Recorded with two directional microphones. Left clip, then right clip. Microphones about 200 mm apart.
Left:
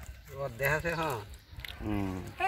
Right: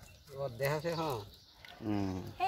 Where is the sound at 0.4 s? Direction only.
5° right (ahead or behind).